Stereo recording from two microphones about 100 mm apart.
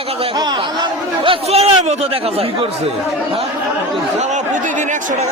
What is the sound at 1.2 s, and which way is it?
Speech, 90° right.